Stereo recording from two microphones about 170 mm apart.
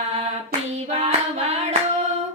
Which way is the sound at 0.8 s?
35° right (ahead or behind).